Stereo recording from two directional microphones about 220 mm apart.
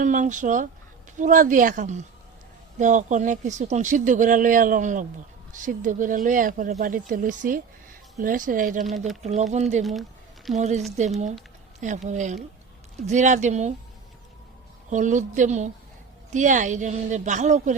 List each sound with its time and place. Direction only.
0.0 s speech: 35° right (ahead or behind)
8.8 s speech: centre (ahead or behind)
9.5 s speech: 30° right (ahead or behind)
14.8 s speech: 35° right (ahead or behind)